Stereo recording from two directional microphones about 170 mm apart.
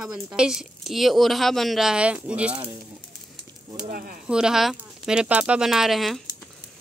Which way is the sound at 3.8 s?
55° right (ahead or behind).